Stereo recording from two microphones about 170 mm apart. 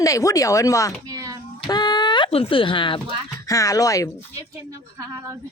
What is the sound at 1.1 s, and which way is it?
Hands, 20° right (ahead or behind).